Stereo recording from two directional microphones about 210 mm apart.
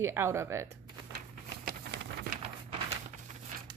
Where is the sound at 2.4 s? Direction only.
30° right (ahead or behind).